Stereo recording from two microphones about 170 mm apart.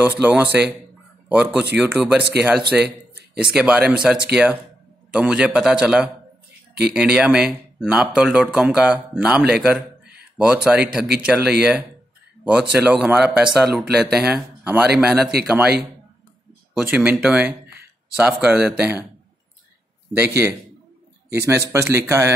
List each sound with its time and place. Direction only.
0.2 s speech: 10° right (ahead or behind)
2.7 s a sound: 5° right (ahead or behind)
3.5 s speech: 5° right (ahead or behind)
16.8 s speech: 5° right (ahead or behind)
20.4 s speech: 10° right (ahead or behind)